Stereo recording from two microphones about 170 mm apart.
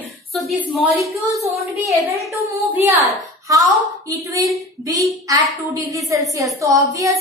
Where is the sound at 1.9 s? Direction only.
20° right (ahead or behind).